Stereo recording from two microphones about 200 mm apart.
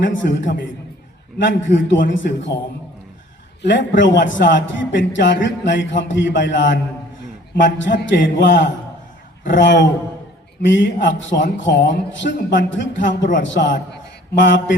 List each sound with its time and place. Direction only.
0.0 s a man's voice: 65° left (ahead or behind)
3.6 s a man's voice: 65° left (ahead or behind)